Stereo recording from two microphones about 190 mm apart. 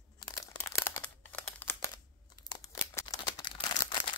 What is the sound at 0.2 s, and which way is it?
Crumpling, 20° left (ahead or behind).